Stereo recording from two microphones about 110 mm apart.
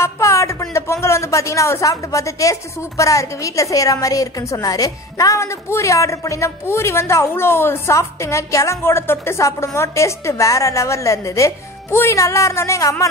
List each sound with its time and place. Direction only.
0.0 s speech: 25° left (ahead or behind)